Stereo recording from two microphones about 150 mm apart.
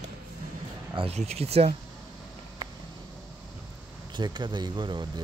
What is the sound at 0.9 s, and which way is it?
Speech, 40° right (ahead or behind).